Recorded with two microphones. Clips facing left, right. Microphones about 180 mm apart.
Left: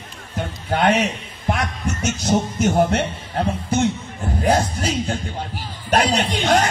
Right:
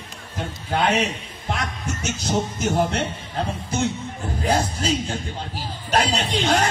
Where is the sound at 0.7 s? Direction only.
60° left (ahead or behind).